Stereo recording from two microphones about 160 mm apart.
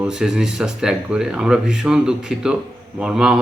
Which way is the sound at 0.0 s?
5° right (ahead or behind).